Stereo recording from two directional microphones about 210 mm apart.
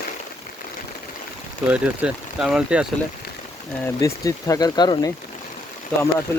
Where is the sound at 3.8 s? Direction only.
15° left (ahead or behind).